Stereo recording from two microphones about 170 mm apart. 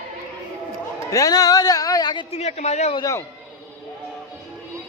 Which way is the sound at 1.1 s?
20° left (ahead or behind).